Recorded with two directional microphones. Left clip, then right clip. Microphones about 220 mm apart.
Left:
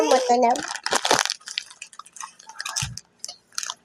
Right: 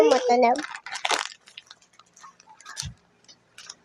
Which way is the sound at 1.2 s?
30° left (ahead or behind).